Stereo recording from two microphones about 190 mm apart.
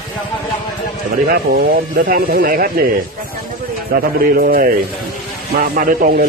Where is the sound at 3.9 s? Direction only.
50° right (ahead or behind).